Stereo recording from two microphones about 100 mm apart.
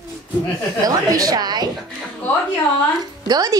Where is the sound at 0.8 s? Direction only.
40° right (ahead or behind).